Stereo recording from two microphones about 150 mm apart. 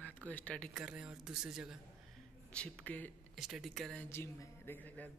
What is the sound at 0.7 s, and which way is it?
Speech, 5° right (ahead or behind).